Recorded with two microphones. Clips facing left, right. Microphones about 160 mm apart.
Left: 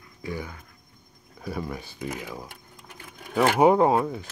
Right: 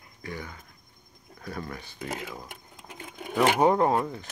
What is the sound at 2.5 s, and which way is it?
Sewing machine, 20° right (ahead or behind).